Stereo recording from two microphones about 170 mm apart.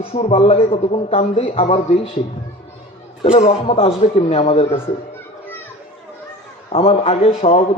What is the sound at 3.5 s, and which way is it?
A man's voice, 35° left (ahead or behind).